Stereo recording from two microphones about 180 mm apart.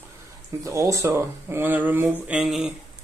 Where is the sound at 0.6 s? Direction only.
15° right (ahead or behind).